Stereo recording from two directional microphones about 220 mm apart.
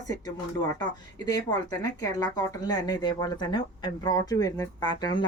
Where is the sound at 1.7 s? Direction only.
15° left (ahead or behind).